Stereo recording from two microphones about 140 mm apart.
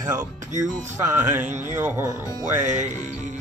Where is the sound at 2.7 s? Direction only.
60° right (ahead or behind).